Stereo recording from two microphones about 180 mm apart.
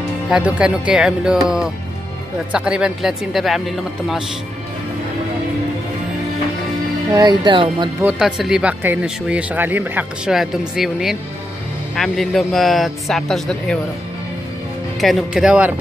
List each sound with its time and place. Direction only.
0.3 s speech: 5° right (ahead or behind)
7.1 s speech: 20° right (ahead or behind)
8.0 s speech: 5° right (ahead or behind)
15.0 s speech: centre (ahead or behind)